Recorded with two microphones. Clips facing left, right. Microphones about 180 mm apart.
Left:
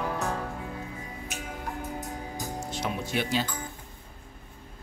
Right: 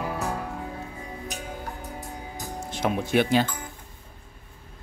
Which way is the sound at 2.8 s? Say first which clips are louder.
Right 9 dB; 55° right (ahead or behind).